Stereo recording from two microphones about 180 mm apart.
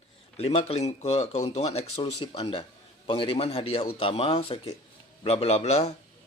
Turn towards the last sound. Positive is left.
turn(degrees=35)  # may be behind; listen again after turning